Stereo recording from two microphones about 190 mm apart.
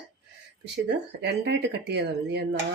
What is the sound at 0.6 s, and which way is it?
Speech, 65° right (ahead or behind).